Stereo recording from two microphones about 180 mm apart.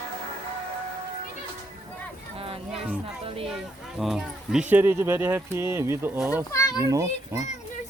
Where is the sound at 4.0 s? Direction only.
Centre (ahead or behind); by 7.4 s 20° right (ahead or behind).